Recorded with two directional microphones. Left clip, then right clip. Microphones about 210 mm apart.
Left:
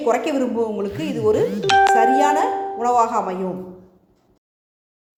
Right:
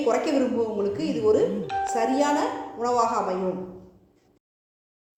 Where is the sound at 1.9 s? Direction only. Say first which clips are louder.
Left 8 dB; 30° left (ahead or behind).